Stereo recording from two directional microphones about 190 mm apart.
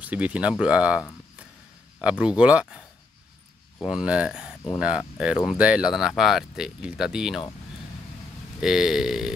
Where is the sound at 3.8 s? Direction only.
5° right (ahead or behind).